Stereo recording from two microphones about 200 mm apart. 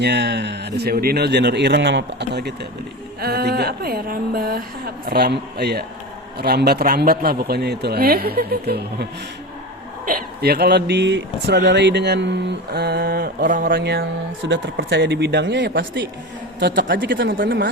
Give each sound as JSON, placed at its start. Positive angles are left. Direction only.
{"t": 0.0, "sound": "speech", "side_deg": -60}
{"t": 10.1, "sound": "speech", "side_deg": -50}
{"t": 14.0, "sound": "speech", "side_deg": -65}